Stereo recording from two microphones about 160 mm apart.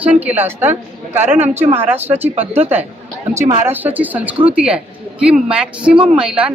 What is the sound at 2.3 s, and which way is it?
Speech, 40° right (ahead or behind).